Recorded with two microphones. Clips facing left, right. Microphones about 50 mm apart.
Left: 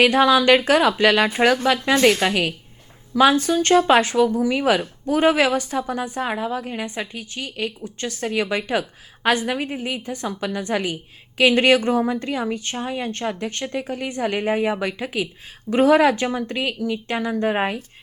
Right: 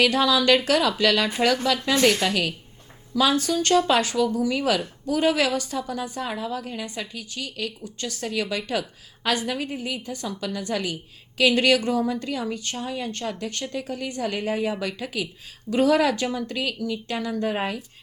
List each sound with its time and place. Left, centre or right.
0.0 s speech: left